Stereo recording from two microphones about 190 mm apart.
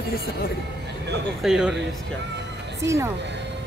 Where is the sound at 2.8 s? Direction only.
15° right (ahead or behind).